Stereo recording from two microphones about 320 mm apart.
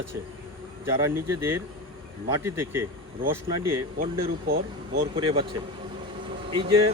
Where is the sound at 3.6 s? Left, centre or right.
Right.